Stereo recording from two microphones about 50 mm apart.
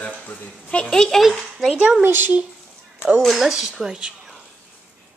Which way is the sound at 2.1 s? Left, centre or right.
Right.